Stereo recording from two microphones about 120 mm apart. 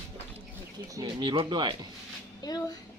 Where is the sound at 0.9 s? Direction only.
40° right (ahead or behind).